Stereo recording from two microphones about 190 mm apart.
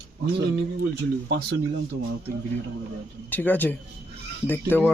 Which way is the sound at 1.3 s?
55° right (ahead or behind).